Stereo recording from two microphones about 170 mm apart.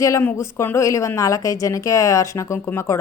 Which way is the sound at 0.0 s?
15° left (ahead or behind).